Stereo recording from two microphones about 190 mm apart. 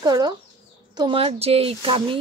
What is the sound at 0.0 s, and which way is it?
Speech, 20° right (ahead or behind).